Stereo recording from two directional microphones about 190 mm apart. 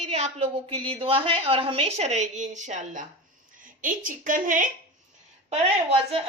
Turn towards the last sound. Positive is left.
turn(degrees=-35)  # may be behind; listen again after turning